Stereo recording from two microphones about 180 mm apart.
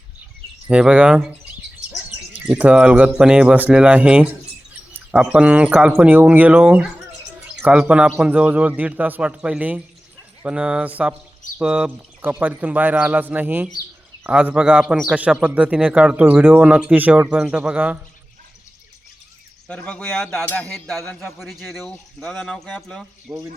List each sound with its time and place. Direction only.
0.7 s speech: 5° right (ahead or behind)
2.3 s speech: 5° right (ahead or behind)
19.6 s speech: 5° left (ahead or behind)
23.3 s speech: 20° right (ahead or behind)